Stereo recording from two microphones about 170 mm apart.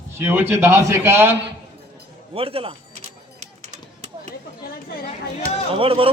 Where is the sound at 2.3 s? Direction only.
35° right (ahead or behind).